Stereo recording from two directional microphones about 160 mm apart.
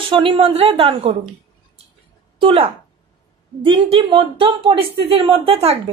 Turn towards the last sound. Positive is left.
turn(degrees=-40)  # may be behind; listen again after turning